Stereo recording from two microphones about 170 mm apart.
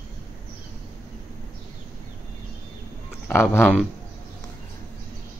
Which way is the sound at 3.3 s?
15° left (ahead or behind).